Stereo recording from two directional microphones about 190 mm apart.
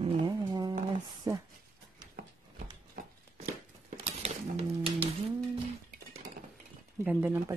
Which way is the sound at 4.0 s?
35° right (ahead or behind).